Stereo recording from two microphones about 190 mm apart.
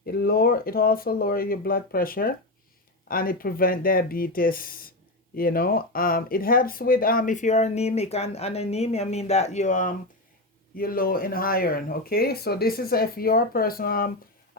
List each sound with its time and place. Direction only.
0.0 s speech: 55° left (ahead or behind)